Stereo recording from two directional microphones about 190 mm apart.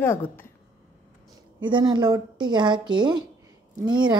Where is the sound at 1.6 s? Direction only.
25° right (ahead or behind).